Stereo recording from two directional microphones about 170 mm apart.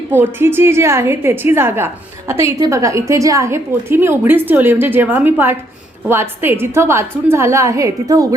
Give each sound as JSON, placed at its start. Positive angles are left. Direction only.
{"t": 0.1, "sound": "a woman's voice", "side_deg": -15}